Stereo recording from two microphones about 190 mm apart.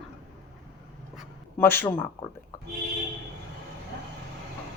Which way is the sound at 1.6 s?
10° left (ahead or behind).